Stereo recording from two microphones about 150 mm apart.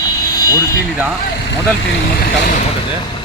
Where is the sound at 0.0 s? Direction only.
20° left (ahead or behind).